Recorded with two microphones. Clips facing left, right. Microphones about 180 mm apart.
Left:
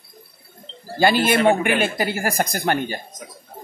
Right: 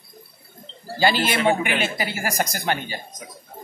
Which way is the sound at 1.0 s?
50° left (ahead or behind).